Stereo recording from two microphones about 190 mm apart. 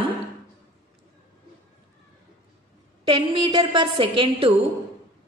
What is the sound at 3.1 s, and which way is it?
A woman's voice, 25° right (ahead or behind).